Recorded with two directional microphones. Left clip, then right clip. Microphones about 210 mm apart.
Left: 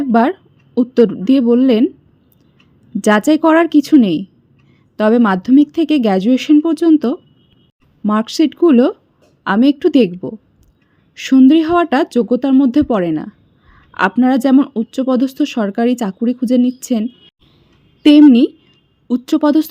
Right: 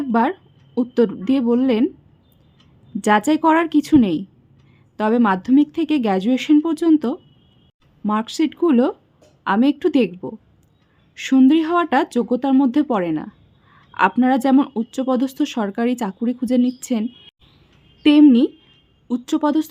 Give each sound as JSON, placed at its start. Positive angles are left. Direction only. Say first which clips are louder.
{"t": 0.0, "sound": "a woman's voice", "louder": "left 5 dB", "side_deg": 15}
{"t": 3.0, "sound": "speech", "louder": "left 4 dB", "side_deg": 15}